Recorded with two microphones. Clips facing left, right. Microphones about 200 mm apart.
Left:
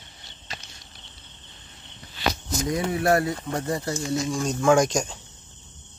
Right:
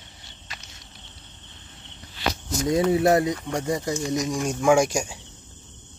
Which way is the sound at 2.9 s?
20° right (ahead or behind).